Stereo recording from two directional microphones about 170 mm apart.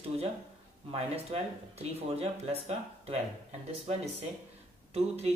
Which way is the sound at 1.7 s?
35° right (ahead or behind).